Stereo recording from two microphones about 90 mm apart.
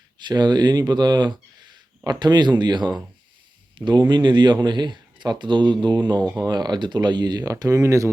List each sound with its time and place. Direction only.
0.2 s speech: 55° right (ahead or behind); by 8.1 s 35° right (ahead or behind)